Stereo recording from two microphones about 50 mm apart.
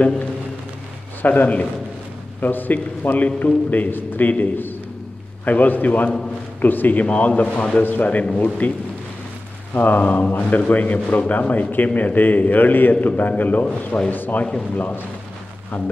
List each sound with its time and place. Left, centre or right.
1.2 s a man's voice: left
9.8 s a man's voice: left
14.4 s speech: left